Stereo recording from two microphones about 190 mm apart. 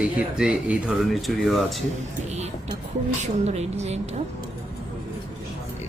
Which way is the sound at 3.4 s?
35° right (ahead or behind).